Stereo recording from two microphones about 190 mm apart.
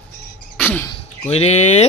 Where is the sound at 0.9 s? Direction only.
35° left (ahead or behind).